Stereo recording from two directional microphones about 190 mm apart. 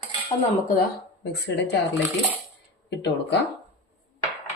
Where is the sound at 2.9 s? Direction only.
65° left (ahead or behind).